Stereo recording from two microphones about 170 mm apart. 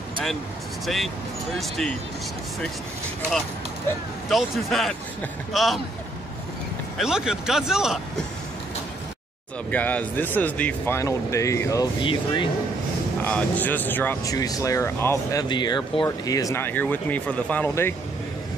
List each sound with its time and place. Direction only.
0.8 s speech: centre (ahead or behind)
4.3 s speech: centre (ahead or behind)
7.0 s speech: 5° right (ahead or behind)
9.7 s speech: 10° left (ahead or behind); by 12.4 s 30° left (ahead or behind)
13.2 s speech: 10° left (ahead or behind)
15.4 s speech: 25° left (ahead or behind)